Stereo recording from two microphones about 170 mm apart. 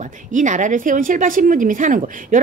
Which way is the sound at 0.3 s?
50° right (ahead or behind).